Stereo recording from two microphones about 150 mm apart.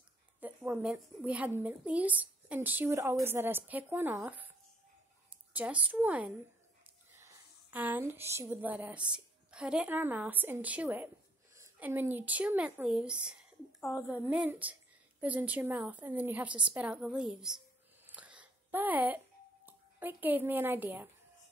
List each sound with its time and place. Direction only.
0.4 s a woman's voice: 10° right (ahead or behind)
7.7 s a woman's voice: 10° right (ahead or behind)
13.7 s a woman's voice: 20° left (ahead or behind)
14.3 s a woman's voice: 10° right (ahead or behind)
18.1 s a sound: 10° right (ahead or behind)